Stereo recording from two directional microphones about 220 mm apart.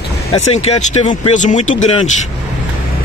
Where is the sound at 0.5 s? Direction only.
30° left (ahead or behind).